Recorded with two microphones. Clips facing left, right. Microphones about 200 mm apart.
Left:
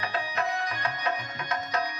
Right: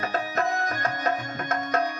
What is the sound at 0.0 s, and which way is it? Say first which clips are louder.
Music: right 4 dB; 45° right (ahead or behind).